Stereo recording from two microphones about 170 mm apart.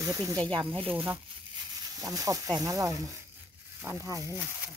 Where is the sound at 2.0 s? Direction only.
20° right (ahead or behind).